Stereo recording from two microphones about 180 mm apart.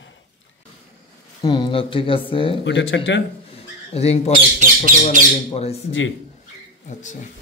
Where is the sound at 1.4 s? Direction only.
25° left (ahead or behind).